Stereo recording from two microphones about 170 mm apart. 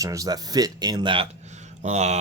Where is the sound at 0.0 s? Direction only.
20° right (ahead or behind).